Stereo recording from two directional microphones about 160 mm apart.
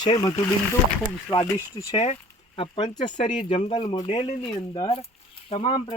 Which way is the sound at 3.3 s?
50° left (ahead or behind).